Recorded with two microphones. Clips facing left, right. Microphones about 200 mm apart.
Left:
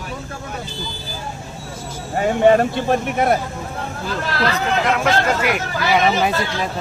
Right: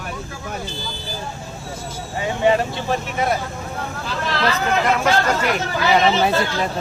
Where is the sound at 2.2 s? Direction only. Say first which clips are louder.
Left 5 dB; 50° left (ahead or behind).